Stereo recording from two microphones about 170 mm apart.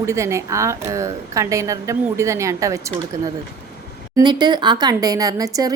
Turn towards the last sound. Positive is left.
turn(degrees=-20)  # may be behind; listen again after turning